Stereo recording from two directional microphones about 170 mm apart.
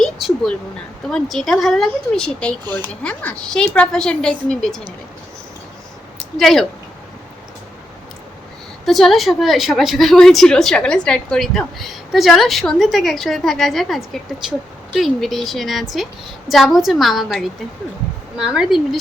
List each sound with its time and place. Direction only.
0.0 s a sound: centre (ahead or behind)
1.0 s a woman's voice: centre (ahead or behind)
6.1 s speech: centre (ahead or behind)
8.9 s a woman's voice: centre (ahead or behind)